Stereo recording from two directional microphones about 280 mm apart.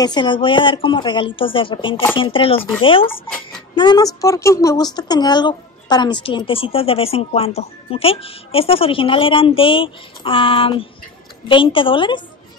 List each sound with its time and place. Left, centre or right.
0.0 s a woman's voice: centre